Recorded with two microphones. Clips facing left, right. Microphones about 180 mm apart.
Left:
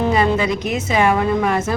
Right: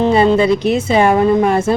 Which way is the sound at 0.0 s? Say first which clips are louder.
Right 6 dB; 30° right (ahead or behind).